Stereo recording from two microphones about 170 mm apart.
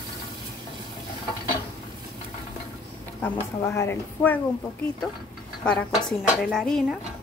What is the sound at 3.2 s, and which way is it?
A woman's voice, 15° left (ahead or behind).